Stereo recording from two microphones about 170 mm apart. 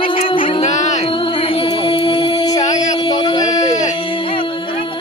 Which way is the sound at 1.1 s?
30° left (ahead or behind).